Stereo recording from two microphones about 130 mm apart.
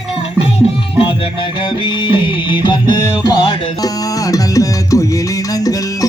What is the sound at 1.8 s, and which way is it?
Music, 40° left (ahead or behind).